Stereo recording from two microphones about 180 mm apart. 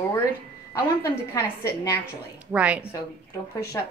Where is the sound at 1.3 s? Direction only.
20° left (ahead or behind).